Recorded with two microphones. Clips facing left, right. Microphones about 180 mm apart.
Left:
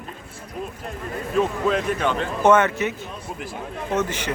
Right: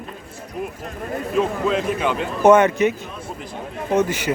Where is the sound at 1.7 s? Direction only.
5° right (ahead or behind).